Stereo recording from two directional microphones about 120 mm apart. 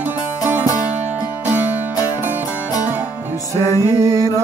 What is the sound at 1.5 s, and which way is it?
Music, 15° right (ahead or behind).